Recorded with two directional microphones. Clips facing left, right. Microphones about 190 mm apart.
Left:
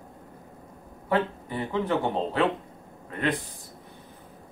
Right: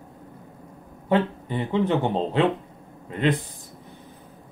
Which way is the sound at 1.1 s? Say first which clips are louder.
Right 4 dB; 20° right (ahead or behind).